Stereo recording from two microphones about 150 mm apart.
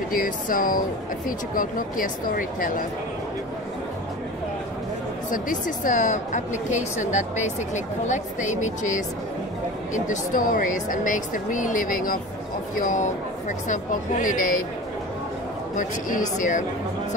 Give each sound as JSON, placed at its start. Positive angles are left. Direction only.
{"t": 0.1, "sound": "speech", "side_deg": 70}
{"t": 5.3, "sound": "a woman's voice", "side_deg": 60}
{"t": 15.7, "sound": "a woman's voice", "side_deg": 55}